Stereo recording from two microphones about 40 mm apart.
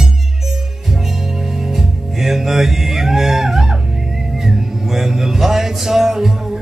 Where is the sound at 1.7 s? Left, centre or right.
Centre.